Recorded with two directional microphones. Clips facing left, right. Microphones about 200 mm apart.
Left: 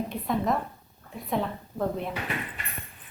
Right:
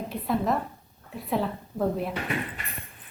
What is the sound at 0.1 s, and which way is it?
Speech, 5° right (ahead or behind).